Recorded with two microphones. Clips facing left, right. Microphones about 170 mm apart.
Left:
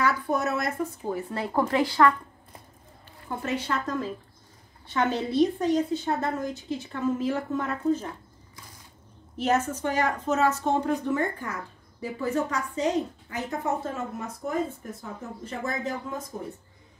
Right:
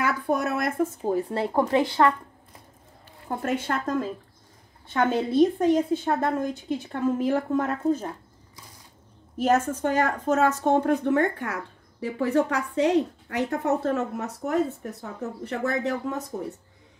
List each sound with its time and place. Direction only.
0.0 s a sound: 55° right (ahead or behind)
1.0 s speech: 30° right (ahead or behind)
1.5 s speech: 20° right (ahead or behind)
3.3 s a woman's voice: 50° right (ahead or behind)
9.4 s speech: 50° right (ahead or behind); by 16.3 s 70° right (ahead or behind)